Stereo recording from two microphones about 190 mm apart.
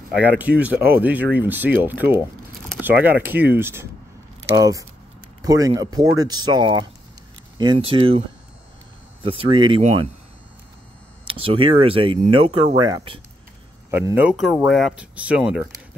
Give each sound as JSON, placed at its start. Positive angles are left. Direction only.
{"t": 0.2, "sound": "speech", "side_deg": -10}
{"t": 9.2, "sound": "speech", "side_deg": -30}
{"t": 11.2, "sound": "speech", "side_deg": -30}
{"t": 13.8, "sound": "speech", "side_deg": -10}